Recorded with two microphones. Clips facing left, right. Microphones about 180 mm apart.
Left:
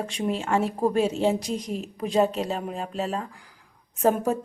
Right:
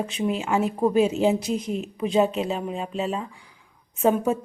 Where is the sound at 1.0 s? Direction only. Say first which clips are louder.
Right 2 dB; 30° left (ahead or behind).